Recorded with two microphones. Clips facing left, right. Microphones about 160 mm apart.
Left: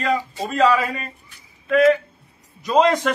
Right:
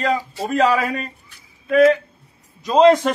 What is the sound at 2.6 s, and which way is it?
Speech, 35° right (ahead or behind).